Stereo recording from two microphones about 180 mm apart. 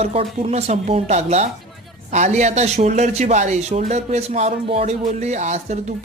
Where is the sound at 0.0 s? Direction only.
35° right (ahead or behind).